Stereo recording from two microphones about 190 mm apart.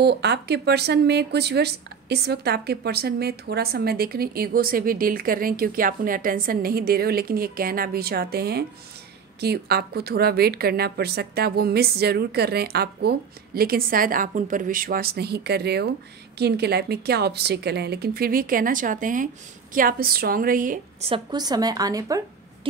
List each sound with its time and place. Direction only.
0.0 s a woman's voice: 60° right (ahead or behind); by 20.8 s 45° right (ahead or behind)
21.1 s a woman's voice: 20° right (ahead or behind)